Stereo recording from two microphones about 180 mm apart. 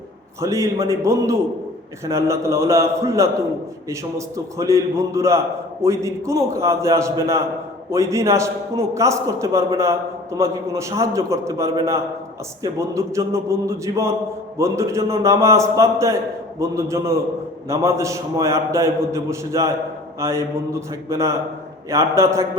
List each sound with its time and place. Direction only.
0.4 s a man's voice: 15° right (ahead or behind)
4.4 s a man's voice: 15° right (ahead or behind)